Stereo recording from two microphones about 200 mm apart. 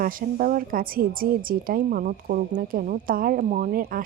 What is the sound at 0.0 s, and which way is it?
Speech, 45° right (ahead or behind).